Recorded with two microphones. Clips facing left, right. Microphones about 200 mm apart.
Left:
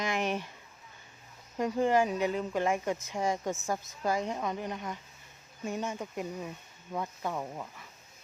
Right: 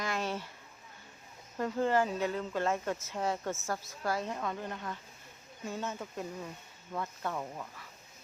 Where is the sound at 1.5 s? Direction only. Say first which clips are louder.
Left 3 dB; 15° left (ahead or behind).